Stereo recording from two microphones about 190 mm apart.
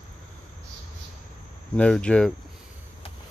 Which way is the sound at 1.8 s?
5° left (ahead or behind).